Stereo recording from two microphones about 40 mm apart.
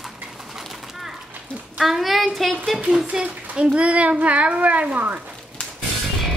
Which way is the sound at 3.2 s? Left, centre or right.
Right.